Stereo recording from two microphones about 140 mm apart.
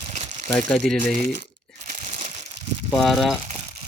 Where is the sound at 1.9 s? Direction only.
65° right (ahead or behind).